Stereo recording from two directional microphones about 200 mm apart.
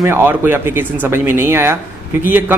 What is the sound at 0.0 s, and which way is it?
A man's voice, 10° right (ahead or behind).